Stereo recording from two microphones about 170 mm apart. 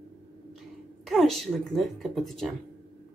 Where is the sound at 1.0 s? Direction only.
Centre (ahead or behind).